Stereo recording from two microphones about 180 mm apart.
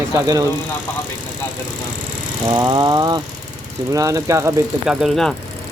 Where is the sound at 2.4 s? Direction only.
25° right (ahead or behind).